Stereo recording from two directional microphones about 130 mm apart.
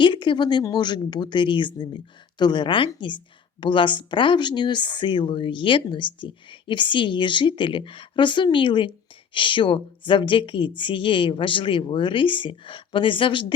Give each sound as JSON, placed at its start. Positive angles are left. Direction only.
{"t": 0.0, "sound": "speech", "side_deg": 40}